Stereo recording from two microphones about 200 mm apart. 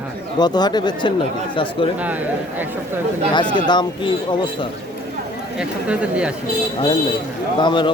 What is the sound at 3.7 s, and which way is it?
Speech, 20° left (ahead or behind).